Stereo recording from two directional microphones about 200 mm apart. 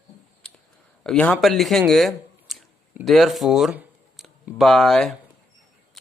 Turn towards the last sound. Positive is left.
turn(degrees=0)  # may be behind; listen again after turning